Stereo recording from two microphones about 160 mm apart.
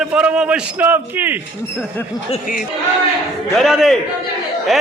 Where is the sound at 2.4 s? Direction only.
60° left (ahead or behind).